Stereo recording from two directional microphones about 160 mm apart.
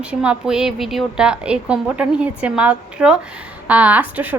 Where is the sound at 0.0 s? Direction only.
5° right (ahead or behind).